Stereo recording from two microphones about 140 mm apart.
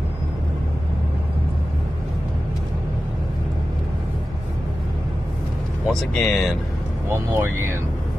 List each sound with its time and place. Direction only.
5.9 s speech: centre (ahead or behind)
7.1 s speech: 15° right (ahead or behind)